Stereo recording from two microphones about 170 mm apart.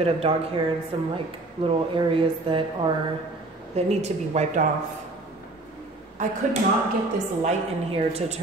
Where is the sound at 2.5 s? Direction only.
30° right (ahead or behind).